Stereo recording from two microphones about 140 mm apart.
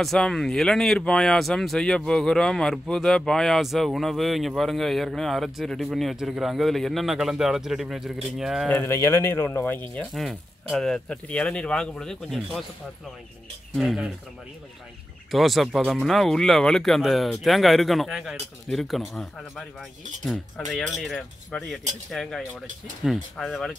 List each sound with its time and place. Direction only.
0.0 s speech: centre (ahead or behind)
8.6 s speech: 15° left (ahead or behind)
10.1 s speech: centre (ahead or behind)
13.7 s speech: 5° right (ahead or behind)
15.3 s speech: centre (ahead or behind)